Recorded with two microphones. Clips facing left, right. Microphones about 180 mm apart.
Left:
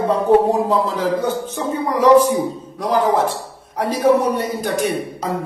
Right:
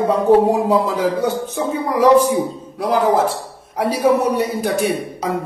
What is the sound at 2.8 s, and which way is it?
A man's voice, 10° right (ahead or behind).